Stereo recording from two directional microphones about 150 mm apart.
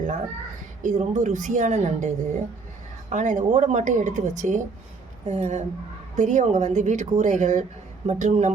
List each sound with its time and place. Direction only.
0.8 s a woman's voice: 55° right (ahead or behind)